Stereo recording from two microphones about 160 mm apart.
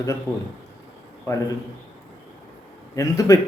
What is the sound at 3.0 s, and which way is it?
Speech, 20° left (ahead or behind).